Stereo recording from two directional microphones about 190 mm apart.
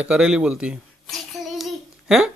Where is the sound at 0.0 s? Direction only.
5° right (ahead or behind).